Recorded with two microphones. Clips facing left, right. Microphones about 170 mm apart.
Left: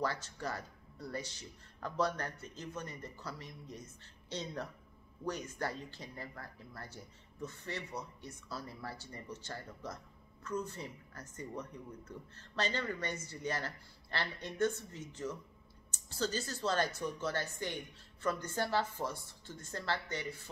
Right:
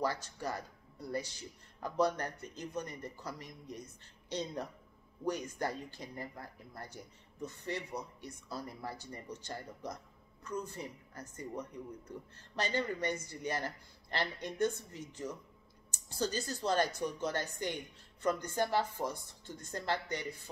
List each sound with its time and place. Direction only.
0.0 s speech: 10° right (ahead or behind)